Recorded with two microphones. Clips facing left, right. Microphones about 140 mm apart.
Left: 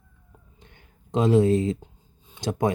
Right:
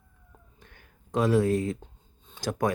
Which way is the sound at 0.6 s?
20° left (ahead or behind).